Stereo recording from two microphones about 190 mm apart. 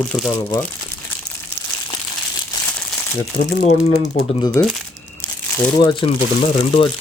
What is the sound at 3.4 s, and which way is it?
Speech, 40° left (ahead or behind).